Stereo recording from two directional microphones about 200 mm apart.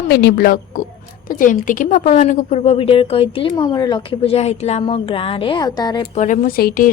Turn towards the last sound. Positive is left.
turn(degrees=45)  # may be behind; listen again after turning